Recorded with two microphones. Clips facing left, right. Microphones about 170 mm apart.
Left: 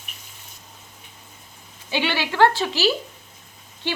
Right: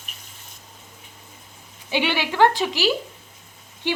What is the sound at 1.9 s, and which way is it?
A woman's voice, 15° right (ahead or behind).